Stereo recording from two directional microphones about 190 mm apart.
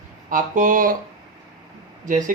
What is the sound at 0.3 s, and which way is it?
Speech, 45° right (ahead or behind).